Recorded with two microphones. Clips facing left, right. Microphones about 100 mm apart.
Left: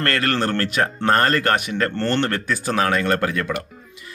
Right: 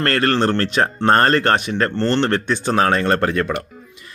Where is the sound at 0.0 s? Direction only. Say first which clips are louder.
Right 4 dB; 30° right (ahead or behind).